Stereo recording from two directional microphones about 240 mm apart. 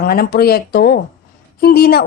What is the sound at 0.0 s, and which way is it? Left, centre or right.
A woman's voice, left.